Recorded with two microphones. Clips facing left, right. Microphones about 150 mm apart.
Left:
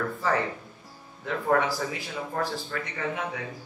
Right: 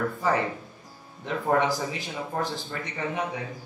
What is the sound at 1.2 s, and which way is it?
Speech, 20° right (ahead or behind).